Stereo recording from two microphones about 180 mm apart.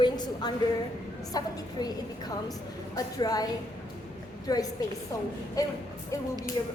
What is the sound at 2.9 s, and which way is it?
A woman's voice, 20° left (ahead or behind).